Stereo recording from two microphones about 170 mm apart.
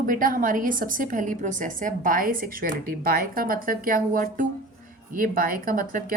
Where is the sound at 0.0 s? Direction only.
55° right (ahead or behind).